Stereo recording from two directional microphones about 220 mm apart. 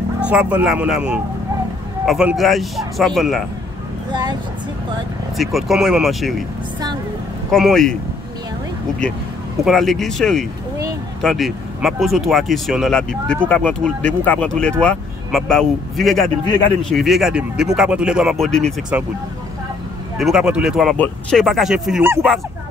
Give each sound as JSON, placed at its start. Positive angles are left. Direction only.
{"t": 0.2, "sound": "speech", "side_deg": -5}
{"t": 4.1, "sound": "speech", "side_deg": -20}
{"t": 5.4, "sound": "speech", "side_deg": 0}
{"t": 7.5, "sound": "speech", "side_deg": 0}
{"t": 9.7, "sound": "speech", "side_deg": 0}
{"t": 20.2, "sound": "speech", "side_deg": 0}